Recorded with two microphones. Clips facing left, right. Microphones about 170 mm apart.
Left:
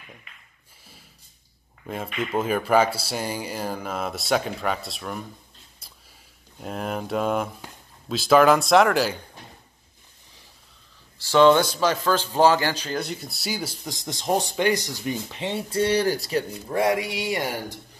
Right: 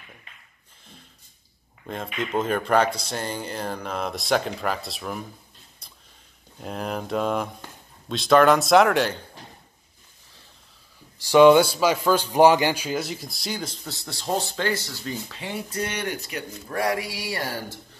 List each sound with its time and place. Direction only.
1.9 s a man's voice: 5° left (ahead or behind)
6.6 s speech: centre (ahead or behind)
11.1 s a man's voice: 15° right (ahead or behind); by 17.7 s 15° left (ahead or behind)